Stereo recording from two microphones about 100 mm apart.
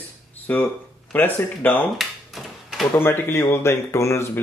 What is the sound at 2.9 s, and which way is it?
Speech, 20° left (ahead or behind).